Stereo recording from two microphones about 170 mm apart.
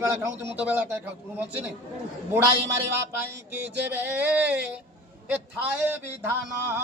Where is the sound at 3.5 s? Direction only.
10° right (ahead or behind).